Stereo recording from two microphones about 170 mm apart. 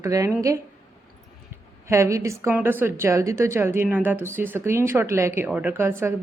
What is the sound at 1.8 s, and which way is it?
A woman's voice, 15° right (ahead or behind).